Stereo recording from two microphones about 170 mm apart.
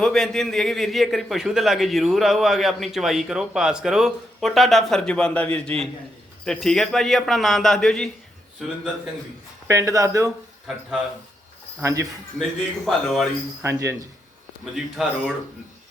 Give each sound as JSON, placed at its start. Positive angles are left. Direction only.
{"t": 0.0, "sound": "a man's voice", "side_deg": 5}
{"t": 9.6, "sound": "speech", "side_deg": -20}
{"t": 11.8, "sound": "speech", "side_deg": -15}
{"t": 12.8, "sound": "a man's voice", "side_deg": 0}
{"t": 13.6, "sound": "speech", "side_deg": -15}
{"t": 14.6, "sound": "a man's voice", "side_deg": -5}